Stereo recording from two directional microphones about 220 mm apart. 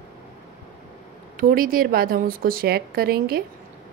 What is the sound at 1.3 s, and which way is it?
A woman's voice, 40° right (ahead or behind).